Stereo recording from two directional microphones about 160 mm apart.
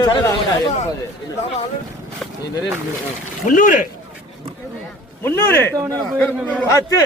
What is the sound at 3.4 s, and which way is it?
Speech, 55° left (ahead or behind).